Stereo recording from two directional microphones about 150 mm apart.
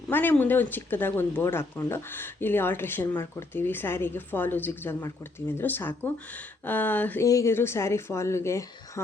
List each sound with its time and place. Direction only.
0.1 s speech: 15° left (ahead or behind)